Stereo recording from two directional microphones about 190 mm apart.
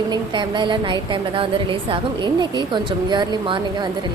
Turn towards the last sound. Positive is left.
turn(degrees=-25)  # may be behind; listen again after turning